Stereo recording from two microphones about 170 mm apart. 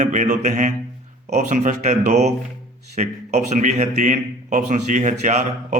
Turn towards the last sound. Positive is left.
turn(degrees=-45)  # may be behind; listen again after turning